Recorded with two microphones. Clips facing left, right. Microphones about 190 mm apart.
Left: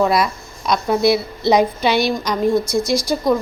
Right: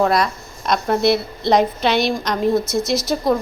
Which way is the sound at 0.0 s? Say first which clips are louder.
Left 1 dB; centre (ahead or behind).